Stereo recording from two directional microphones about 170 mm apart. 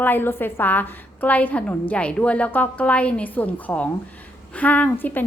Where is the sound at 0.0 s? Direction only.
10° left (ahead or behind).